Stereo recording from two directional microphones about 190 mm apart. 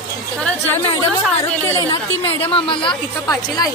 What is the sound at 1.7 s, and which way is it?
Speech, 15° left (ahead or behind).